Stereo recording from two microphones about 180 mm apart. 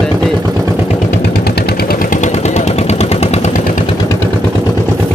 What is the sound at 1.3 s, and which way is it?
Vehicle, 60° left (ahead or behind).